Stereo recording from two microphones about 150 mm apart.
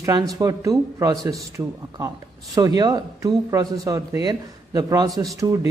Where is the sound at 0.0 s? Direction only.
20° right (ahead or behind).